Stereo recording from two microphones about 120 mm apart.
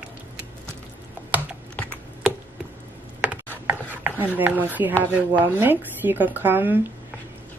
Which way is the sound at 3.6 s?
15° right (ahead or behind).